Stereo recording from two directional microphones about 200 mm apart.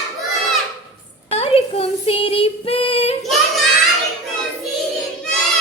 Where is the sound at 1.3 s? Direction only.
30° left (ahead or behind).